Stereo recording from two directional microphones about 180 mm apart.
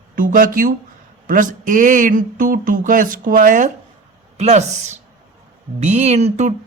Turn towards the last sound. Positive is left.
turn(degrees=-40)  # may be behind; listen again after turning